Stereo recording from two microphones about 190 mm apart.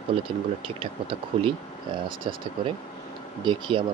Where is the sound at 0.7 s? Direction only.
30° right (ahead or behind).